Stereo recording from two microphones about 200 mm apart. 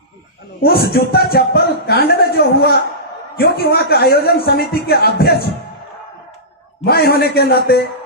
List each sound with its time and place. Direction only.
0.6 s a man's voice: 50° left (ahead or behind)
6.8 s a man's voice: 50° left (ahead or behind)